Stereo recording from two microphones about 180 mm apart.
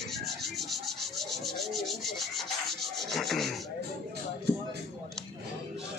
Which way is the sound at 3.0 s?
Centre (ahead or behind).